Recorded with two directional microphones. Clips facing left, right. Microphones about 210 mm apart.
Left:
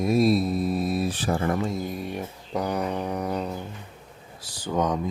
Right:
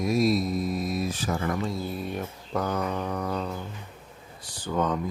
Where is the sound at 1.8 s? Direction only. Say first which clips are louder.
Left 1 dB; 10° left (ahead or behind).